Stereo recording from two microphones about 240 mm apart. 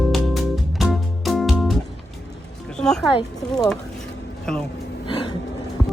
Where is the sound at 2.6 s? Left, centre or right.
Centre.